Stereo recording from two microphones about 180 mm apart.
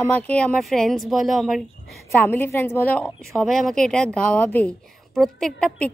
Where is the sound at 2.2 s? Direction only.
10° left (ahead or behind).